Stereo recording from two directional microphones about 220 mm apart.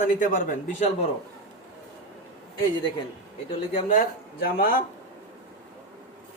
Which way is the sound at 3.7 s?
40° left (ahead or behind).